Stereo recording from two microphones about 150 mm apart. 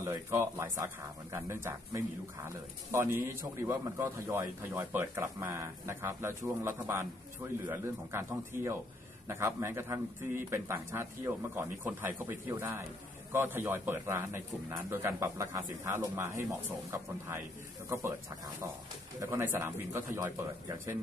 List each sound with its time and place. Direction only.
0.0 s a man's voice: 20° right (ahead or behind)